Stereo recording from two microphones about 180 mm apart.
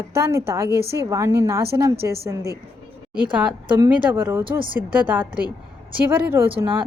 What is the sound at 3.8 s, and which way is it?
A woman's voice, 15° right (ahead or behind).